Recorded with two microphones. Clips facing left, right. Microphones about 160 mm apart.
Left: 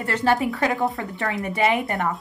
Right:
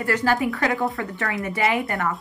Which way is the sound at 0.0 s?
20° left (ahead or behind).